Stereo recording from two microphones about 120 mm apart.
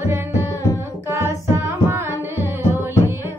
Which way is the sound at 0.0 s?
20° right (ahead or behind).